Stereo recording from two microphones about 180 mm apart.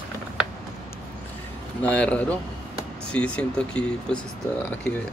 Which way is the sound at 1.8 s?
5° left (ahead or behind).